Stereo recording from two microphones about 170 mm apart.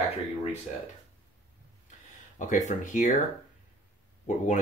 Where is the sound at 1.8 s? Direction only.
50° left (ahead or behind).